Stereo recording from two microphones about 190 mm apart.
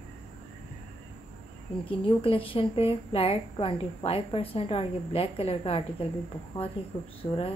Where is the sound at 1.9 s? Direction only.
25° left (ahead or behind).